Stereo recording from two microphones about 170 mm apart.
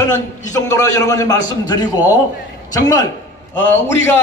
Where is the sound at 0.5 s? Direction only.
20° left (ahead or behind).